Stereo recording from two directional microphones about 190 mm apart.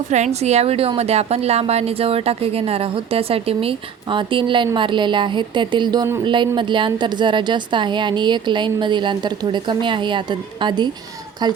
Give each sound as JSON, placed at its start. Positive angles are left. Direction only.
{"t": 0.1, "sound": "a woman's voice", "side_deg": -35}